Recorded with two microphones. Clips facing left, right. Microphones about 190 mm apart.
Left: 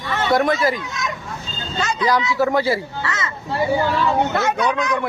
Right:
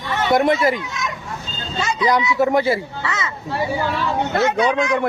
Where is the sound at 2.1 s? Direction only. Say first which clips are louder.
Right 2 dB; 20° right (ahead or behind).